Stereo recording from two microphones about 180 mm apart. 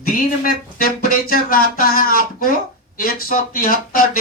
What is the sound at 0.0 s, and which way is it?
Speech, 55° left (ahead or behind).